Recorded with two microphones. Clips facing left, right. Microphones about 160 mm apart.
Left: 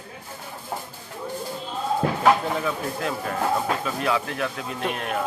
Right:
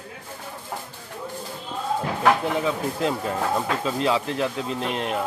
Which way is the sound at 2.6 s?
20° right (ahead or behind).